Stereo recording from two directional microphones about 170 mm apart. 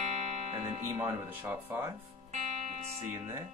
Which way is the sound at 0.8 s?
15° right (ahead or behind).